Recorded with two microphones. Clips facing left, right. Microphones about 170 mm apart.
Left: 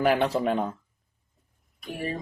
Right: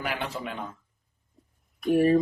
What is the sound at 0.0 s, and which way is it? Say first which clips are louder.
Speech: left 10 dB; 40° left (ahead or behind).